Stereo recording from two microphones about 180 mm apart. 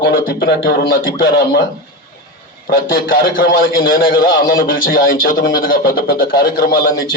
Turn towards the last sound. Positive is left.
turn(degrees=55)  # may be behind; listen again after turning